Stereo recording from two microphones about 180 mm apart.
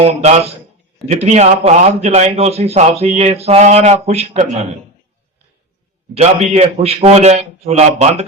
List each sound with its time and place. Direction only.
0.0 s a man's voice: 35° right (ahead or behind)
6.1 s a man's voice: 35° right (ahead or behind)